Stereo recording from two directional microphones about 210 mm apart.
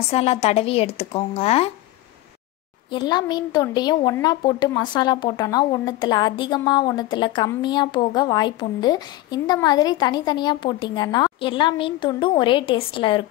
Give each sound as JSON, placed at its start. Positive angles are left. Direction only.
{"t": 0.1, "sound": "a woman's voice", "side_deg": 30}
{"t": 2.9, "sound": "a woman's voice", "side_deg": 20}